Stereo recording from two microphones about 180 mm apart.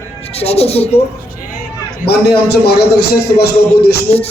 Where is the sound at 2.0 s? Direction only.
65° left (ahead or behind).